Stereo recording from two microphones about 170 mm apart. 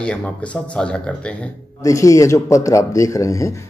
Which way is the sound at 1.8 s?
20° left (ahead or behind).